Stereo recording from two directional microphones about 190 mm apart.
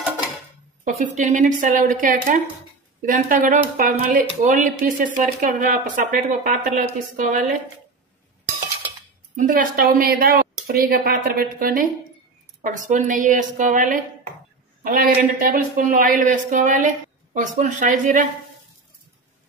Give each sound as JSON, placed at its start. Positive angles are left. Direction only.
{"t": 0.8, "sound": "speech", "side_deg": -40}
{"t": 9.4, "sound": "speech", "side_deg": -45}